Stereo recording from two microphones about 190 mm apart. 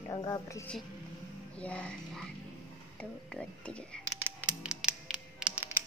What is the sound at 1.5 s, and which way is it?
Speech, 5° left (ahead or behind).